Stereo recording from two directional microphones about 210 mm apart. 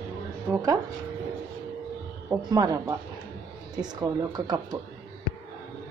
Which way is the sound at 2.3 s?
20° right (ahead or behind).